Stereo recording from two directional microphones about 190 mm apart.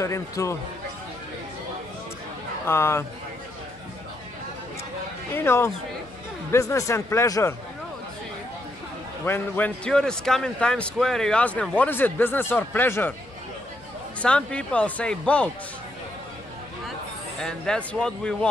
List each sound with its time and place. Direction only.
0.0 s a man's voice: 15° left (ahead or behind)
2.6 s a man's voice: 15° left (ahead or behind)
5.3 s a man's voice: 15° left (ahead or behind)
9.2 s a man's voice: 10° left (ahead or behind)
14.2 s speech: 5° left (ahead or behind)
17.4 s speech: 5° left (ahead or behind)